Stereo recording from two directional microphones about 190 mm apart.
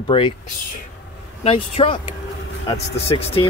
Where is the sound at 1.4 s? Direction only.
30° left (ahead or behind).